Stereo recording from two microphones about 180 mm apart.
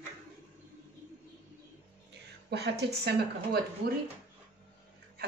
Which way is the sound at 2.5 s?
70° right (ahead or behind).